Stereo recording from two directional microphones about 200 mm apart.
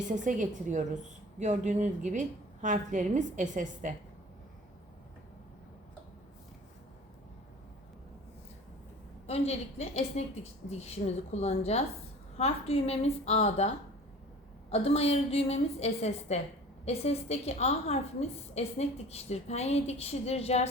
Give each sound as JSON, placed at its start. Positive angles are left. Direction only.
{"t": 0.2, "sound": "a woman's voice", "side_deg": -40}
{"t": 9.2, "sound": "a woman's voice", "side_deg": 30}
{"t": 14.7, "sound": "a woman's voice", "side_deg": 30}